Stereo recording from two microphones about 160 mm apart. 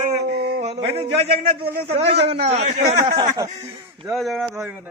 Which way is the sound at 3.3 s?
20° right (ahead or behind).